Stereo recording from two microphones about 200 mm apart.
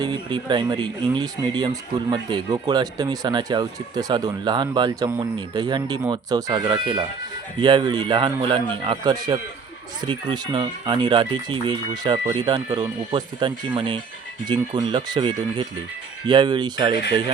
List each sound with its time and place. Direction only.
0.0 s speech: 20° right (ahead or behind)